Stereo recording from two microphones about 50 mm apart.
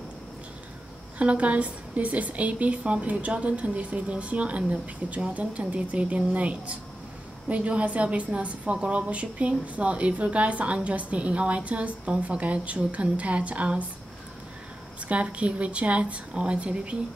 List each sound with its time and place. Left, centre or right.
1.1 s a woman's voice: right
15.0 s a woman's voice: right